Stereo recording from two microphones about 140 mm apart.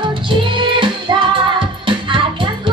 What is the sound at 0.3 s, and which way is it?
Music, 35° right (ahead or behind).